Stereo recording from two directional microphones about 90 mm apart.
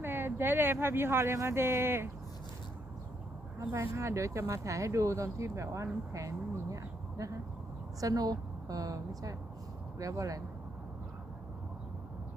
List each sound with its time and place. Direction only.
0.0 s speech: 25° right (ahead or behind)
3.6 s a woman's voice: 30° right (ahead or behind)